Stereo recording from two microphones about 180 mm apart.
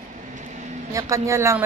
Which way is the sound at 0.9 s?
20° right (ahead or behind).